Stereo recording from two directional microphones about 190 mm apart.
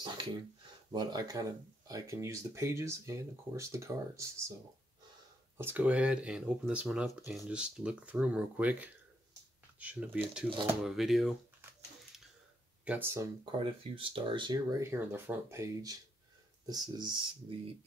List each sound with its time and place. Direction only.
0.9 s speech: 20° right (ahead or behind)
5.6 s speech: 10° right (ahead or behind)
12.8 s speech: 10° right (ahead or behind)
13.6 s speech: 30° right (ahead or behind)